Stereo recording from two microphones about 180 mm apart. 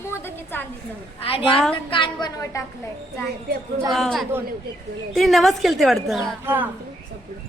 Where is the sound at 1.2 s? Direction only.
30° left (ahead or behind).